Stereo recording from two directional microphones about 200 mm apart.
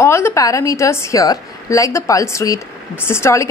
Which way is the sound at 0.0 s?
15° left (ahead or behind).